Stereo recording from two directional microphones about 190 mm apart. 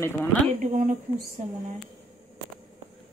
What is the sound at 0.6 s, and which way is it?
Speech, 40° right (ahead or behind).